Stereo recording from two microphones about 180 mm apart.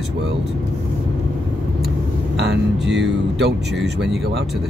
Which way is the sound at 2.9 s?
75° right (ahead or behind).